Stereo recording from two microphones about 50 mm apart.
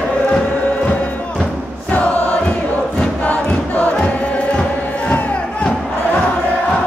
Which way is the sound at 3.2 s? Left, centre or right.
Left.